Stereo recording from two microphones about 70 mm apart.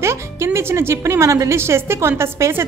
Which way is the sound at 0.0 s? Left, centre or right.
Right.